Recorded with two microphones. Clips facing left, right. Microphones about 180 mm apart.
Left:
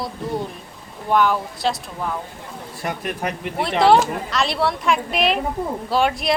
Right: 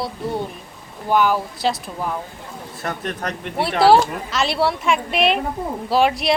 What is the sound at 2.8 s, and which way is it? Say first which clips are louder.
A woman's voice: left 1 dB; 10° left (ahead or behind).